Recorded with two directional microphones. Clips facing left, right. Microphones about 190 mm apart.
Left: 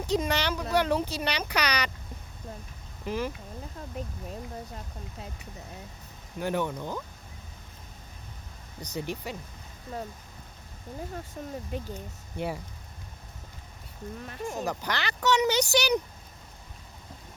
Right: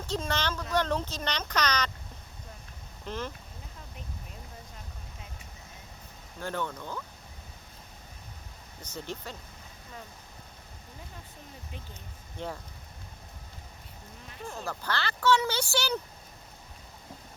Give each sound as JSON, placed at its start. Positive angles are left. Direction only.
{"t": 0.0, "sound": "speech", "side_deg": 15}
{"t": 3.0, "sound": "speech", "side_deg": 10}
{"t": 6.4, "sound": "speech", "side_deg": 15}
{"t": 9.0, "sound": "speech", "side_deg": 15}
{"t": 11.4, "sound": "speech", "side_deg": 50}
{"t": 12.4, "sound": "speech", "side_deg": 15}
{"t": 14.4, "sound": "speech", "side_deg": 15}